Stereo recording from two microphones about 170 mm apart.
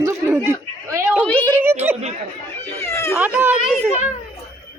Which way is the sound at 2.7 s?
15° left (ahead or behind).